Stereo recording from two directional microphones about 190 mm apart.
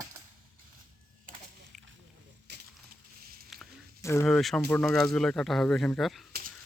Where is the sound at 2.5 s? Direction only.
60° right (ahead or behind).